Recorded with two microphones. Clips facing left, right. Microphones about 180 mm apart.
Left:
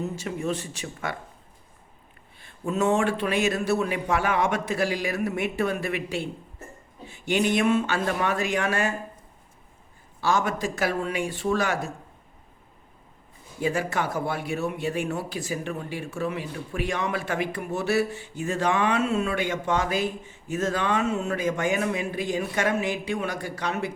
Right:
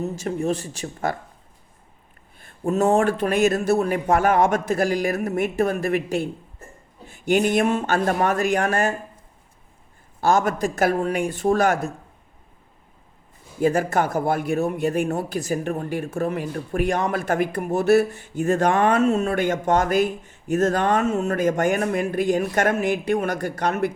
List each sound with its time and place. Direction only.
0.0 s speech: 40° right (ahead or behind)
2.4 s speech: 45° right (ahead or behind)
10.2 s speech: 50° right (ahead or behind)
13.6 s speech: 45° right (ahead or behind)